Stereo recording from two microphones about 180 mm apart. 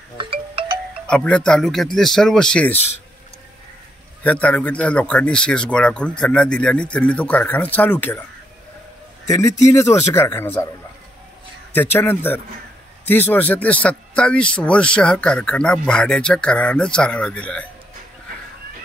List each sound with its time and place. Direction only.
0.2 s music: 30° right (ahead or behind)
1.0 s speech: 5° left (ahead or behind)
4.2 s a man's voice: 10° left (ahead or behind)
9.3 s a man's voice: 20° left (ahead or behind)
11.7 s a man's voice: 10° left (ahead or behind)